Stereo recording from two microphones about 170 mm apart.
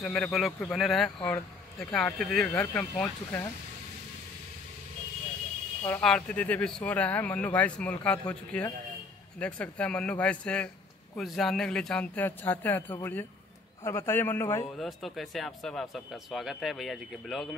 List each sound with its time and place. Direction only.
0.0 s speech: 5° left (ahead or behind)
5.9 s speech: 10° left (ahead or behind)
14.8 s speech: centre (ahead or behind)